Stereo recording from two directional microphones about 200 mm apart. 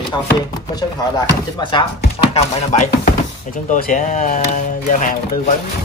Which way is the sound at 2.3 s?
35° left (ahead or behind).